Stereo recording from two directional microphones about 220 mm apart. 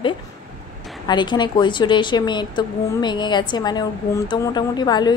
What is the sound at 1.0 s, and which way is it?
Speech, 20° left (ahead or behind).